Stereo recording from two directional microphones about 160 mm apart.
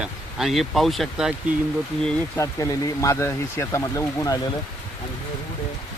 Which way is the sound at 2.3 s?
20° left (ahead or behind).